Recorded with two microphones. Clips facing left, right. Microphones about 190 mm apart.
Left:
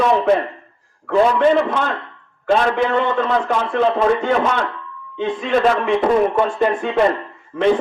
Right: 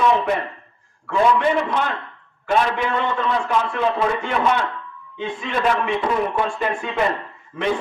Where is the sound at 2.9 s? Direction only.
45° left (ahead or behind).